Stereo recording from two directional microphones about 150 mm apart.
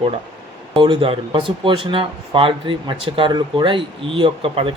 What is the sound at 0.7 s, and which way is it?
Speech, 35° right (ahead or behind).